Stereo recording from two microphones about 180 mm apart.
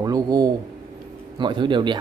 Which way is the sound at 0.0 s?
20° right (ahead or behind).